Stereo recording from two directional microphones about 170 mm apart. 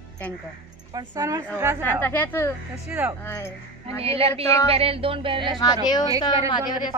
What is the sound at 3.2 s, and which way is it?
Speech, 15° left (ahead or behind).